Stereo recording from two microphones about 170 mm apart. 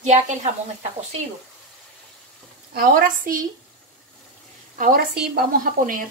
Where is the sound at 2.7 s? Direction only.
55° right (ahead or behind).